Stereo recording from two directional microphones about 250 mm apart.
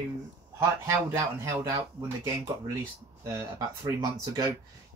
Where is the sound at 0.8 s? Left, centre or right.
Centre.